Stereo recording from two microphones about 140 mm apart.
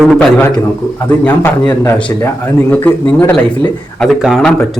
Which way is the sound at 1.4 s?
20° left (ahead or behind).